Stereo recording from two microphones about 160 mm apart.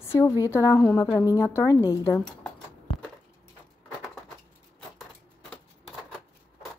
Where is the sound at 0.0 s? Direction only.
15° left (ahead or behind).